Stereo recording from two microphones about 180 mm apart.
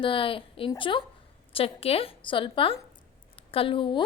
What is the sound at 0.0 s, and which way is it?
A woman's voice, 30° left (ahead or behind).